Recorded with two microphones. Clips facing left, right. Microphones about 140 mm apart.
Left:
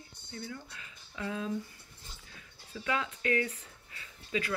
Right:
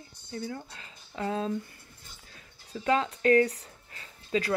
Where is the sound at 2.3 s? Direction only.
35° right (ahead or behind).